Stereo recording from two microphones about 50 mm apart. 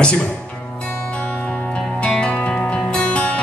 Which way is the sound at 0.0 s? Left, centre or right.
Left.